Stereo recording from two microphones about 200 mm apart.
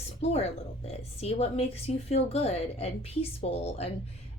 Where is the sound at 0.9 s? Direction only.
30° left (ahead or behind).